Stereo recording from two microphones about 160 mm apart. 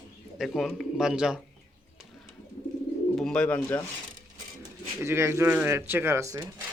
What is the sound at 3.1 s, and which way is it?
Speech, 5° left (ahead or behind).